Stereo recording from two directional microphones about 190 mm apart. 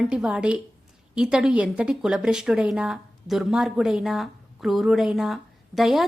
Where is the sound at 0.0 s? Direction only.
5° right (ahead or behind).